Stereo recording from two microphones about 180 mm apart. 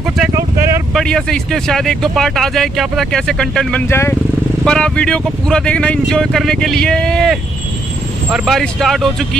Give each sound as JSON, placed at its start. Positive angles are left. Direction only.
{"t": 0.3, "sound": "vehicle", "side_deg": -15}
{"t": 0.9, "sound": "speech", "side_deg": 5}